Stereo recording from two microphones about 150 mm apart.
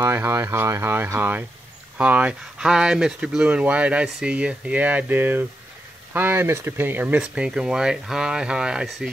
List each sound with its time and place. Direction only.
0.0 s speech: 15° right (ahead or behind); by 9.1 s centre (ahead or behind)